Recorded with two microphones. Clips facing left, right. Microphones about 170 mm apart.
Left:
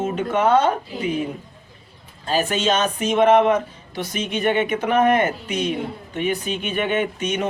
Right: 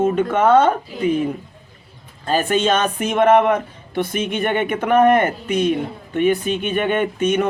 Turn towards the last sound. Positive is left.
turn(degrees=-55)  # may be behind; listen again after turning